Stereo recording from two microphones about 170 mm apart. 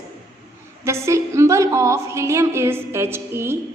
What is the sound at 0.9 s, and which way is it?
A woman's voice, 15° right (ahead or behind).